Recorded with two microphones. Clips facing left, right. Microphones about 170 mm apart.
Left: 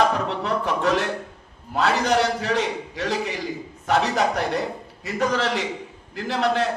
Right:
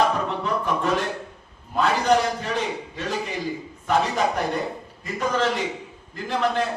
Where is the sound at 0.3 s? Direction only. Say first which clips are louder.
Left 1 dB; 90° left.